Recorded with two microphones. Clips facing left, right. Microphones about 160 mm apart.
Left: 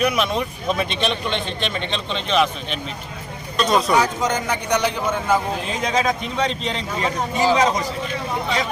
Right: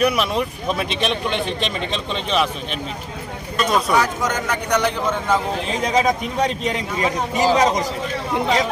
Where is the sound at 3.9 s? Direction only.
15° left (ahead or behind).